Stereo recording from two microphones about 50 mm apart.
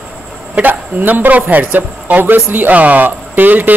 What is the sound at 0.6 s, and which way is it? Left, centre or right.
Speech, right.